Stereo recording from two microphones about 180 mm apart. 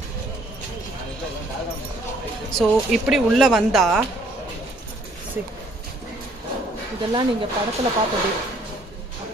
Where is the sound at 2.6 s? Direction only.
Centre (ahead or behind).